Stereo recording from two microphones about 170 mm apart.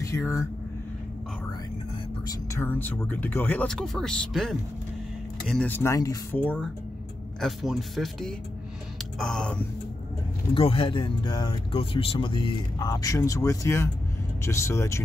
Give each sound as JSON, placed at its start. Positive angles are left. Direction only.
{"t": 0.0, "sound": "speech", "side_deg": 20}
{"t": 2.2, "sound": "speech", "side_deg": 15}
{"t": 10.5, "sound": "speech", "side_deg": 30}